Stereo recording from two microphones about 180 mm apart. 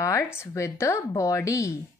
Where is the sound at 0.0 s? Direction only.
15° left (ahead or behind).